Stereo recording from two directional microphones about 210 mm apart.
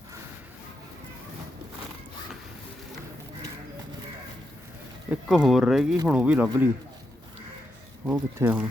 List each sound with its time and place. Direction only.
5.3 s speech: centre (ahead or behind)
8.1 s speech: 10° right (ahead or behind)